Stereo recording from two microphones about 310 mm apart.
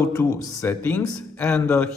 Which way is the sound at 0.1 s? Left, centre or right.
Centre.